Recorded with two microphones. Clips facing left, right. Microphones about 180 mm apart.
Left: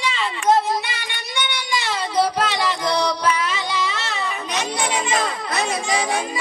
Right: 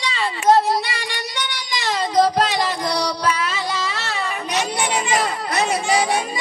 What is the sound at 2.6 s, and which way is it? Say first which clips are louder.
Music: even; 40° right (ahead or behind).